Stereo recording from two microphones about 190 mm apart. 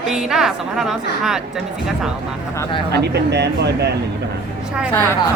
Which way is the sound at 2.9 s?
60° right (ahead or behind).